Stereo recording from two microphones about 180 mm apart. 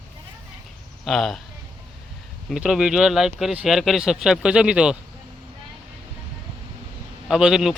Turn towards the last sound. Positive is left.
turn(degrees=-5)  # may be behind; listen again after turning